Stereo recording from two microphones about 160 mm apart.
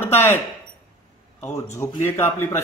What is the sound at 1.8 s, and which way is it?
Speech, 15° left (ahead or behind).